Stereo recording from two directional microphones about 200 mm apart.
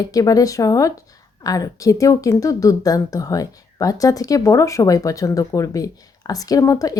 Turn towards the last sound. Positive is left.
turn(degrees=15)  # may be behind; listen again after turning